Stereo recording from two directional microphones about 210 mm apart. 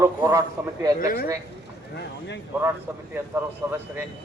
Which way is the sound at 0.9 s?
45° left (ahead or behind).